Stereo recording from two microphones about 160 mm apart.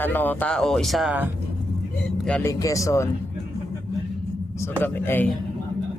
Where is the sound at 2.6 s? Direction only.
20° left (ahead or behind).